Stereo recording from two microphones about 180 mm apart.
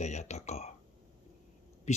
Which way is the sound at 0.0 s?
40° left (ahead or behind).